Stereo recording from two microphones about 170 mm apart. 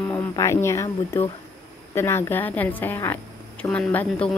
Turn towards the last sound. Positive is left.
turn(degrees=10)  # may be behind; listen again after turning